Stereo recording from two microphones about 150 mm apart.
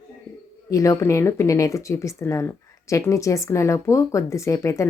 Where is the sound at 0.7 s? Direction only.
20° left (ahead or behind).